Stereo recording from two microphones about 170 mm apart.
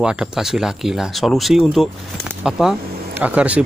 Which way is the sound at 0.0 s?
5° right (ahead or behind).